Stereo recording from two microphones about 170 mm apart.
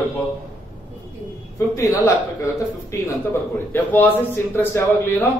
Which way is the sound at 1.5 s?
15° left (ahead or behind).